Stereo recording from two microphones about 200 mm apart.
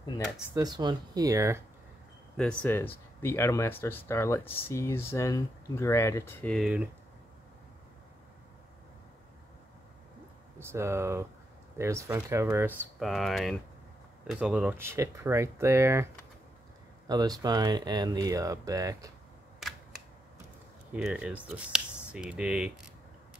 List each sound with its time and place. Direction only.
0.6 s speech: 20° right (ahead or behind)
2.3 s speech: 5° left (ahead or behind)
10.6 s speech: 15° right (ahead or behind)
17.1 s speech: 20° right (ahead or behind)
20.9 s speech: 5° right (ahead or behind)